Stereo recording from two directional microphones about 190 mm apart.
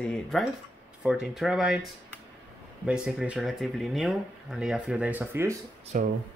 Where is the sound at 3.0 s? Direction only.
5° right (ahead or behind).